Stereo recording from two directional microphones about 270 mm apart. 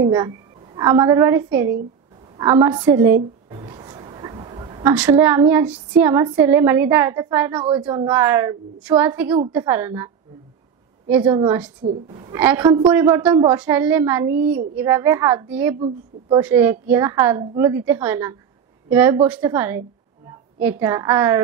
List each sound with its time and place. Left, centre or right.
0.0 s a woman's voice: centre
2.3 s a sound: centre
4.9 s a woman's voice: centre
12.1 s a woman's voice: centre
12.4 s speech: centre